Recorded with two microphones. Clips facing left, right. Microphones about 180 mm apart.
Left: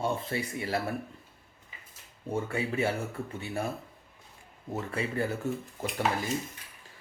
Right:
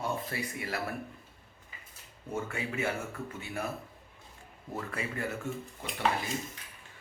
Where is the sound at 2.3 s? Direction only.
30° left (ahead or behind).